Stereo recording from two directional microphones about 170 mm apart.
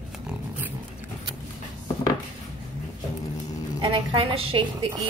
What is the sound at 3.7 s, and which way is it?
A woman's voice, 30° right (ahead or behind).